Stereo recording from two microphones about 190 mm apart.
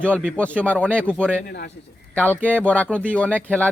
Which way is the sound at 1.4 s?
55° left (ahead or behind).